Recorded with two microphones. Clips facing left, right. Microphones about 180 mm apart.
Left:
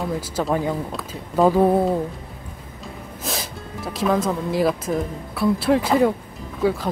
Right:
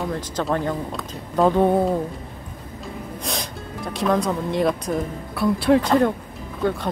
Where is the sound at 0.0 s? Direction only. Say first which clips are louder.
Left 1 dB; 5° left (ahead or behind).